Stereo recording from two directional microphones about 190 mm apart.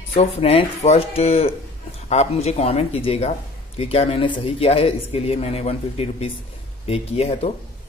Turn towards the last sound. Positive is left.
turn(degrees=35)  # may be behind; listen again after turning